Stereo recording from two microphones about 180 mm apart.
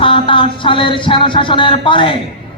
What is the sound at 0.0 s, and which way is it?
A man's voice, 30° left (ahead or behind).